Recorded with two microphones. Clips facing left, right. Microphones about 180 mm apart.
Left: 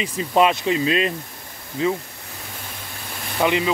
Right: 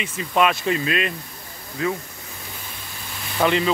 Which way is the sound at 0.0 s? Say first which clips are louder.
Left 2 dB; 25° left (ahead or behind).